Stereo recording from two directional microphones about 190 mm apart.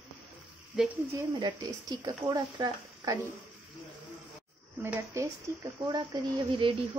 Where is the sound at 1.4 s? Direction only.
20° right (ahead or behind).